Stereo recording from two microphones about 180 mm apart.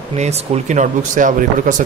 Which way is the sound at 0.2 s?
40° right (ahead or behind).